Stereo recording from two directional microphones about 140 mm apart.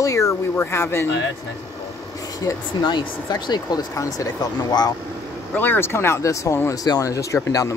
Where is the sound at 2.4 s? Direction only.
35° left (ahead or behind).